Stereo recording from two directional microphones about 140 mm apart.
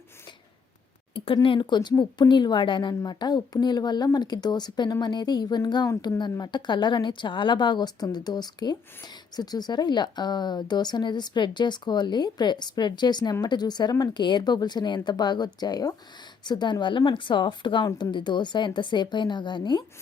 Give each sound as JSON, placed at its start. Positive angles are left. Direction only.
{"t": 1.1, "sound": "speech", "side_deg": 40}